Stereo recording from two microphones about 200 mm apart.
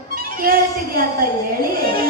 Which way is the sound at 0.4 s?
45° right (ahead or behind).